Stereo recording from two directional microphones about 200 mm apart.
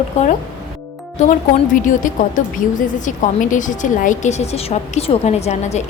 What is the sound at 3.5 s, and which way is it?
A woman's voice, 40° left (ahead or behind).